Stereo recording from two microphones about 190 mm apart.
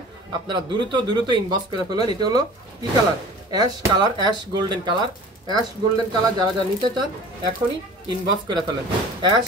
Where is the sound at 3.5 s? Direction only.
20° right (ahead or behind).